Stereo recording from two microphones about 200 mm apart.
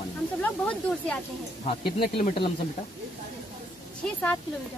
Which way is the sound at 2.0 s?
50° left (ahead or behind).